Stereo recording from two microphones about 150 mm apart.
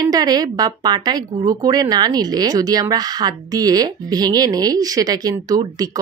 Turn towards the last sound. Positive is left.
turn(degrees=-25)  # may be behind; listen again after turning